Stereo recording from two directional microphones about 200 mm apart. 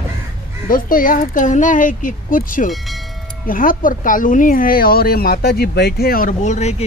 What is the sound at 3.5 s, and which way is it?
Speech, 45° left (ahead or behind).